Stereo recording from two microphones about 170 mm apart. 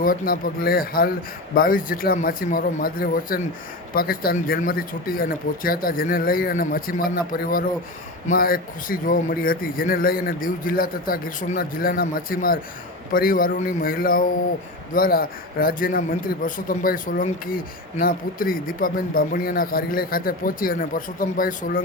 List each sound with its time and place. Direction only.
0.0 s a man's voice: 55° left (ahead or behind)